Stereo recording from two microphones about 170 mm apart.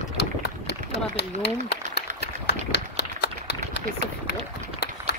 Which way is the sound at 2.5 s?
80° left.